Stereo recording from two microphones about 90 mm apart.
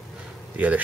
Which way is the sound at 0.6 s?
15° right (ahead or behind).